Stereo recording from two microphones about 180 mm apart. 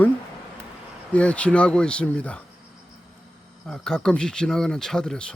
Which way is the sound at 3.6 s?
5° left (ahead or behind).